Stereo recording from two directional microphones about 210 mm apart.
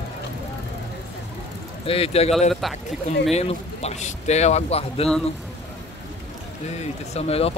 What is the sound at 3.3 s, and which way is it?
Speech, 30° left (ahead or behind).